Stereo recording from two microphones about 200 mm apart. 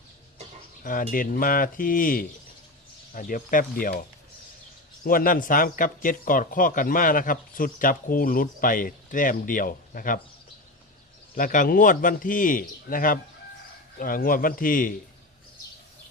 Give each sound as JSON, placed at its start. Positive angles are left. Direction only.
{"t": 0.9, "sound": "speech", "side_deg": 45}
{"t": 5.0, "sound": "speech", "side_deg": 45}
{"t": 11.3, "sound": "speech", "side_deg": 40}